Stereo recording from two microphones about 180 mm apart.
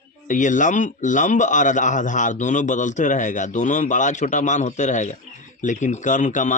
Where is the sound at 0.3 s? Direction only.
45° left (ahead or behind).